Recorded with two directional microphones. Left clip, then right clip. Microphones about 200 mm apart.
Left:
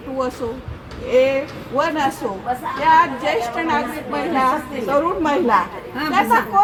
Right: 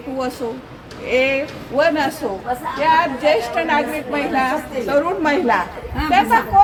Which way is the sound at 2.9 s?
10° right (ahead or behind).